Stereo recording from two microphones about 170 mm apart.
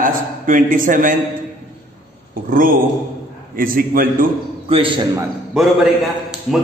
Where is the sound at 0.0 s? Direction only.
50° right (ahead or behind).